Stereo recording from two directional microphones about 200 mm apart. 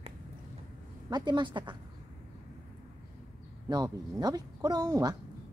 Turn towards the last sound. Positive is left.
turn(degrees=-20)  # may be behind; listen again after turning